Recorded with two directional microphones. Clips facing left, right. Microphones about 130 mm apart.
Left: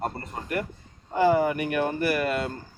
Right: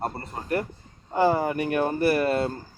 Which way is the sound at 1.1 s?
30° right (ahead or behind).